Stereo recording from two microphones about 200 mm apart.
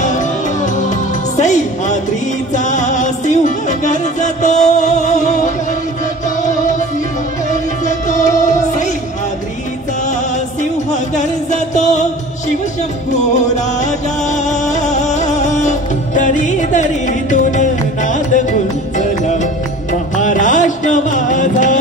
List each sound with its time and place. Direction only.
0.8 s music: 35° left (ahead or behind)
10.6 s music: 35° left (ahead or behind)
14.3 s music: 35° left (ahead or behind)
19.9 s music: 40° left (ahead or behind)